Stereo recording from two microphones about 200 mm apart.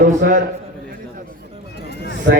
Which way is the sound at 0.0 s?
40° right (ahead or behind).